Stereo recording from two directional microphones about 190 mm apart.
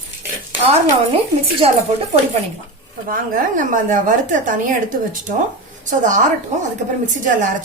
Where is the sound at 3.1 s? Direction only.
45° right (ahead or behind).